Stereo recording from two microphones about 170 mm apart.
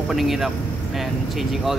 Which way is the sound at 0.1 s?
Centre (ahead or behind).